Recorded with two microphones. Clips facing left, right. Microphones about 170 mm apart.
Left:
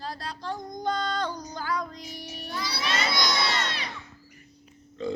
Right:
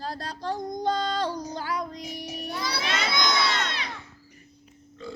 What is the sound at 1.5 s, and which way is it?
Music, 25° right (ahead or behind).